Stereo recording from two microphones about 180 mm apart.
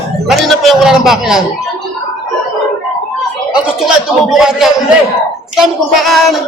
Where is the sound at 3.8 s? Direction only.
Centre (ahead or behind).